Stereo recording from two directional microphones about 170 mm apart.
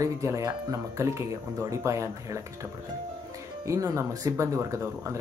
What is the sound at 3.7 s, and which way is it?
Speech, 15° right (ahead or behind).